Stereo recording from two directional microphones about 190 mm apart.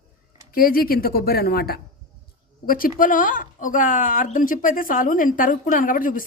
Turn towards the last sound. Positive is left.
turn(degrees=45)  # may be behind; listen again after turning